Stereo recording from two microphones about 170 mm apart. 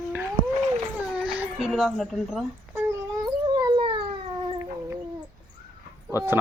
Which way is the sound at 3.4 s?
25° right (ahead or behind).